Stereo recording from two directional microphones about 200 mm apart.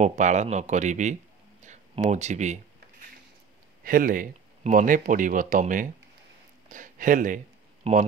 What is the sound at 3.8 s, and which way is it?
Speech, 45° right (ahead or behind).